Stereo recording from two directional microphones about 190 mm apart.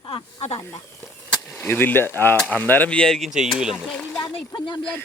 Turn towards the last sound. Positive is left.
turn(degrees=25)  # may be behind; listen again after turning